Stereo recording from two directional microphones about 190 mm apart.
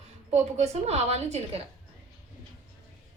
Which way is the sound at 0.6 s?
35° right (ahead or behind).